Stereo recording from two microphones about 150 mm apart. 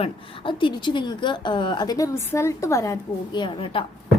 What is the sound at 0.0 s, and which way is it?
A woman's voice, 35° left (ahead or behind).